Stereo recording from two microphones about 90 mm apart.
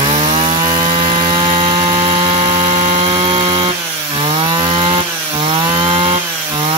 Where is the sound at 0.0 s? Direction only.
65° right (ahead or behind).